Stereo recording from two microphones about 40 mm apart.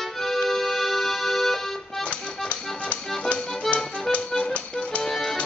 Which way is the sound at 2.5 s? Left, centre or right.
Left.